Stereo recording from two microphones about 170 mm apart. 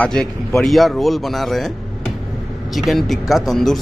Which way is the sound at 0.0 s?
5° left (ahead or behind).